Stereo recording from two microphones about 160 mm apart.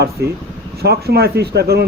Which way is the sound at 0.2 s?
90° right.